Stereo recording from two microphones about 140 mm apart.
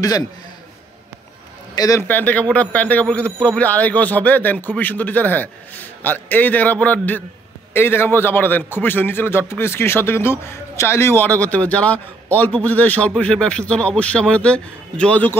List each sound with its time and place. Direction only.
1.8 s speech: 25° left (ahead or behind)
2.0 s a man's voice: 10° left (ahead or behind)